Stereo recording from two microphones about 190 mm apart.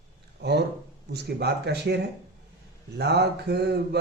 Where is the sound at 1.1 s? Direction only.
60° right (ahead or behind).